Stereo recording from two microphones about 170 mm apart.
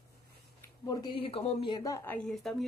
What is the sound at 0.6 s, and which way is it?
Speech, 20° left (ahead or behind).